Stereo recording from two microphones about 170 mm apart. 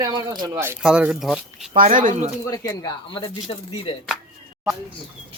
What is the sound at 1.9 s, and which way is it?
Speech, 50° right (ahead or behind).